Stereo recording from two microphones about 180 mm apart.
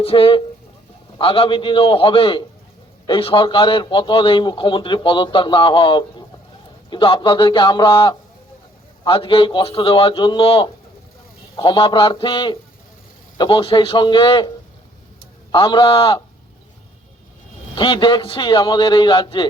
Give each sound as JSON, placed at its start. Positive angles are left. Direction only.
{"t": 0.0, "sound": "a man's voice", "side_deg": 30}
{"t": 15.5, "sound": "a man's voice", "side_deg": 25}
{"t": 17.7, "sound": "a man's voice", "side_deg": 25}